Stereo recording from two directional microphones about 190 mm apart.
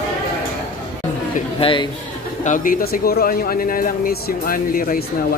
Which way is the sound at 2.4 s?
45° left (ahead or behind).